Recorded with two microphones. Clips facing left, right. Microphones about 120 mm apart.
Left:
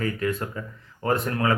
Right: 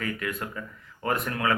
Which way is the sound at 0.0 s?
30° left (ahead or behind).